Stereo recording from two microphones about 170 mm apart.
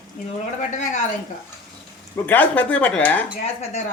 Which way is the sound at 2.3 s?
10° left (ahead or behind).